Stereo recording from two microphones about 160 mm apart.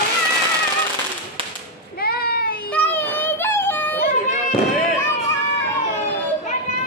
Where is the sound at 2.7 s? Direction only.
10° left (ahead or behind).